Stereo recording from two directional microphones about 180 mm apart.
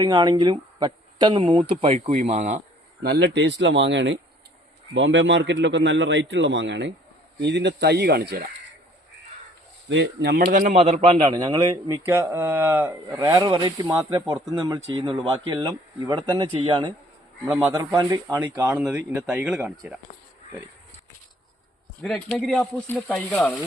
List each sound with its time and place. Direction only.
0.0 s speech: 25° right (ahead or behind); by 2.6 s 40° right (ahead or behind)
3.0 s a man's voice: 65° right (ahead or behind); by 6.9 s 85° right
7.3 s speech: 70° right (ahead or behind)
9.9 s speech: 70° right (ahead or behind); by 19.7 s 10° right (ahead or behind)
22.0 s speech: centre (ahead or behind)